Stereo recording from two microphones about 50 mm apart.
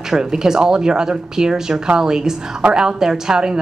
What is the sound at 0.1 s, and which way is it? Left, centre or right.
A woman's voice, centre.